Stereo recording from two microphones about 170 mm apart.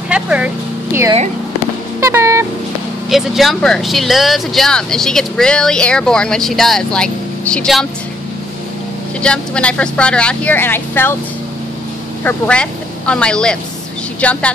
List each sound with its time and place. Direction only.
0.1 s speech: 5° right (ahead or behind)
2.0 s music: 15° right (ahead or behind)
3.1 s speech: centre (ahead or behind)
9.2 s speech: 5° left (ahead or behind)
12.3 s speech: 5° left (ahead or behind)